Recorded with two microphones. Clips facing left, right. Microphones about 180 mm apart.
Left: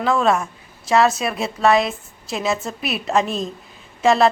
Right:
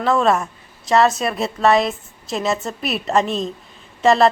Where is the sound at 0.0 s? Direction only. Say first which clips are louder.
Right 1 dB; centre (ahead or behind).